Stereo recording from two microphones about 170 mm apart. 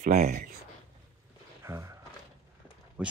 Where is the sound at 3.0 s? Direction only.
10° right (ahead or behind).